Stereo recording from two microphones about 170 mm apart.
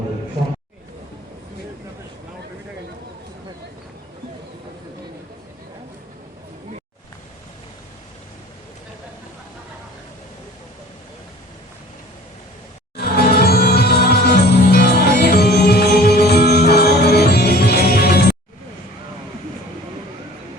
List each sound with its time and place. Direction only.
13.0 s music: 65° left (ahead or behind)